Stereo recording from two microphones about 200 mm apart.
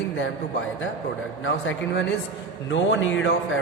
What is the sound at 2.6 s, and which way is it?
Music, 65° left (ahead or behind).